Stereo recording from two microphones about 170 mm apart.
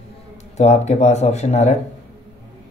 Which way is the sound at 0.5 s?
40° left (ahead or behind).